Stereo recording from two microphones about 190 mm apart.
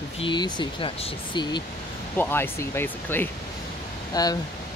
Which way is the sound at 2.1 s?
10° left (ahead or behind).